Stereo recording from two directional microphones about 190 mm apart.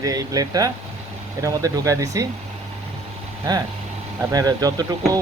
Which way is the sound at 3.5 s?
20° right (ahead or behind).